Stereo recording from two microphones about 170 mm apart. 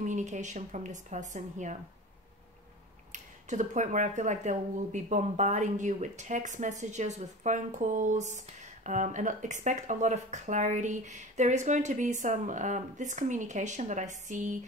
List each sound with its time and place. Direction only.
0.0 s speech: 45° right (ahead or behind)
3.1 s speech: 45° right (ahead or behind)